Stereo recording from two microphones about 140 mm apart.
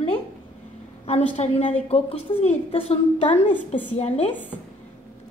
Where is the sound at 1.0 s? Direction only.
45° left (ahead or behind).